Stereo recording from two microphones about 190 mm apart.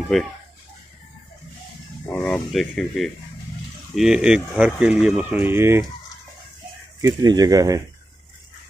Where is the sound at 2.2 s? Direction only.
Centre (ahead or behind).